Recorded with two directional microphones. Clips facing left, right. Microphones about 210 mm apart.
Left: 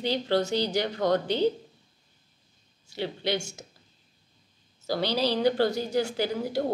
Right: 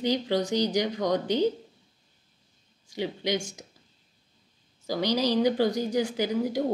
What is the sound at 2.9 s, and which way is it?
Speech, 15° right (ahead or behind).